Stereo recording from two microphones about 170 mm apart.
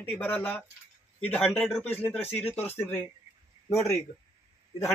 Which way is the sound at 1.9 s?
10° left (ahead or behind).